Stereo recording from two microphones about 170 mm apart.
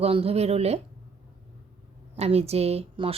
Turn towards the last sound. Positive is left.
turn(degrees=-35)  # may be behind; listen again after turning